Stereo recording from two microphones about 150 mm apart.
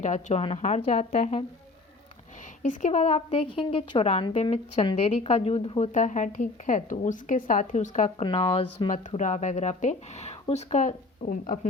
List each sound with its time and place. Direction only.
0.0 s a woman's voice: 50° left (ahead or behind)
2.6 s a woman's voice: 50° left (ahead or behind)
8.2 s speech: 35° left (ahead or behind)
8.9 s a woman's voice: 50° left (ahead or behind)